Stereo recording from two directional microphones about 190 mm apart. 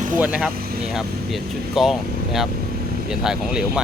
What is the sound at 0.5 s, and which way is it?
Speech, 50° right (ahead or behind).